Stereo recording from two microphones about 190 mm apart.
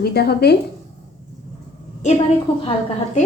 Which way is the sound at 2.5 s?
30° left (ahead or behind).